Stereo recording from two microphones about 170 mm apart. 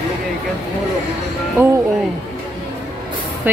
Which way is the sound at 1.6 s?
15° right (ahead or behind).